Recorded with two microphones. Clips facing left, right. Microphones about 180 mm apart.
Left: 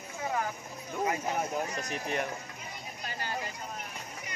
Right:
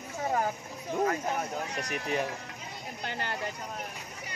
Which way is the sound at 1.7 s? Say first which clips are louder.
Right 1 dB; 70° right (ahead or behind).